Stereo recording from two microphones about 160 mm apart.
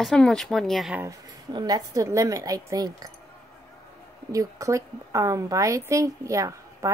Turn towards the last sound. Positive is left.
turn(degrees=-20)  # may be behind; listen again after turning